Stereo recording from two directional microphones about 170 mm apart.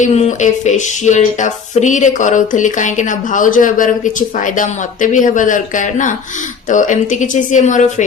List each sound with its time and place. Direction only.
0.0 s speech: 40° left (ahead or behind)